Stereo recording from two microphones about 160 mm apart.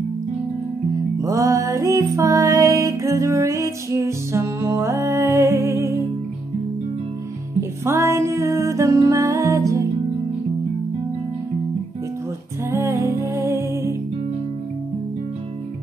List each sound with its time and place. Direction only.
1.2 s music: 20° right (ahead or behind)
7.8 s music: 15° right (ahead or behind)
12.7 s music: 20° right (ahead or behind)